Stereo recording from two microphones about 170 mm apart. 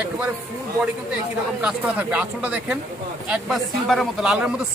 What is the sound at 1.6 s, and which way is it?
Speech, 5° right (ahead or behind).